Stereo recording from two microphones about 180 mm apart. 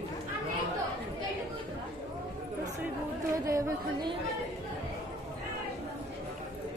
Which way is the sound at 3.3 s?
20° right (ahead or behind).